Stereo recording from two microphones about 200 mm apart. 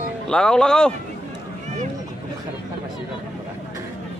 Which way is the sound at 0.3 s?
5° left (ahead or behind).